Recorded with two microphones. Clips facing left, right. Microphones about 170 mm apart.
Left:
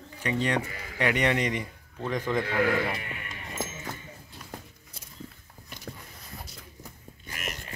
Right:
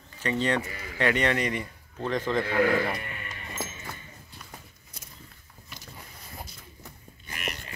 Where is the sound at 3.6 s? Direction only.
20° left (ahead or behind).